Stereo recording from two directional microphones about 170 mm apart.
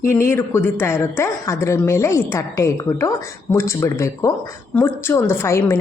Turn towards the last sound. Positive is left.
turn(degrees=15)  # may be behind; listen again after turning